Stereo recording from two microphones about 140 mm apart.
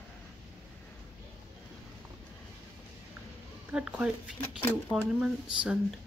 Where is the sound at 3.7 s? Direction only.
10° right (ahead or behind).